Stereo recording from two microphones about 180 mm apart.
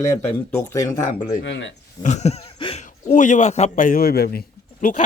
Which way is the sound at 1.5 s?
90° left.